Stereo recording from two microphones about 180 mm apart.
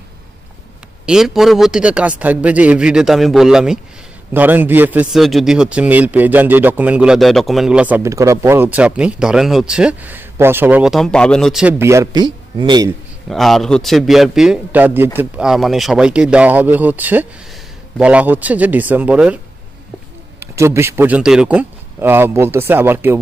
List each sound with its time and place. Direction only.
1.0 s a man's voice: centre (ahead or behind)
11.6 s speech: 15° right (ahead or behind)
13.3 s a man's voice: centre (ahead or behind)